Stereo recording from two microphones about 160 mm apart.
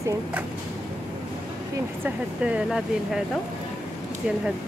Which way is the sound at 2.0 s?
10° right (ahead or behind).